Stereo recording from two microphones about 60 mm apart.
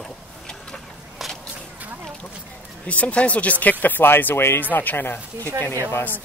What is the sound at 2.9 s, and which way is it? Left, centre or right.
Speech, left.